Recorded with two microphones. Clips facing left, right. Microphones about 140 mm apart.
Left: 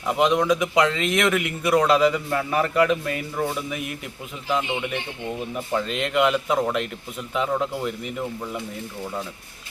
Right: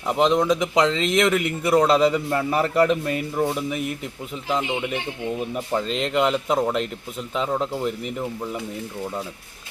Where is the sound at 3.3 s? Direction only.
15° right (ahead or behind).